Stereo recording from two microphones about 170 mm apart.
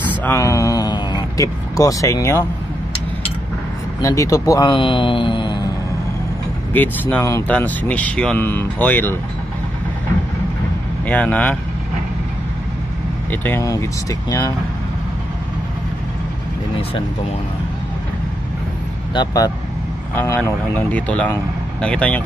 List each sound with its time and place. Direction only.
0.2 s speech: 15° left (ahead or behind)
4.0 s speech: 20° left (ahead or behind)
6.7 s speech: 10° left (ahead or behind)
11.1 s speech: 10° left (ahead or behind)
13.3 s speech: 10° left (ahead or behind)
19.1 s speech: 20° left (ahead or behind); by 22.2 s 5° left (ahead or behind)